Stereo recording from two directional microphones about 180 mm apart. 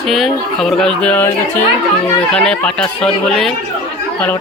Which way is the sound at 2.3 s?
5° left (ahead or behind).